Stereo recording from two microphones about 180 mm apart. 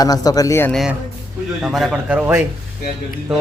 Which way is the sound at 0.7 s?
Centre (ahead or behind).